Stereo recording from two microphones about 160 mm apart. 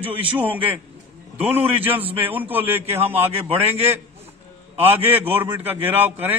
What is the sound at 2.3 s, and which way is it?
A man's voice, 10° right (ahead or behind).